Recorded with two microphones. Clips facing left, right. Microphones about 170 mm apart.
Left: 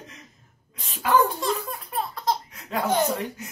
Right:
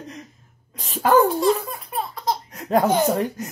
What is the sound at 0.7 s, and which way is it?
Speech, 40° right (ahead or behind).